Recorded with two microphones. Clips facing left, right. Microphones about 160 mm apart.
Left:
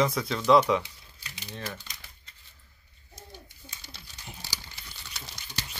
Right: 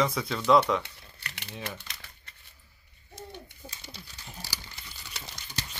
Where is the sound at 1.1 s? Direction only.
65° right (ahead or behind).